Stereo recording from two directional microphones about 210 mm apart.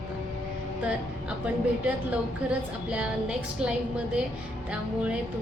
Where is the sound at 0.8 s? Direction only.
5° right (ahead or behind).